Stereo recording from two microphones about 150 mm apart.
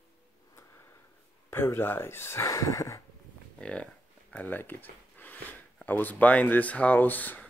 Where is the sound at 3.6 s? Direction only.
10° left (ahead or behind).